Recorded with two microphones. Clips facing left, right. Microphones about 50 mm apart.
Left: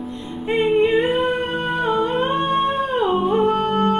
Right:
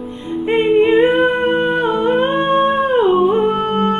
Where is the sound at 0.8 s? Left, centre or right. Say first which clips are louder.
Right 8 dB; right.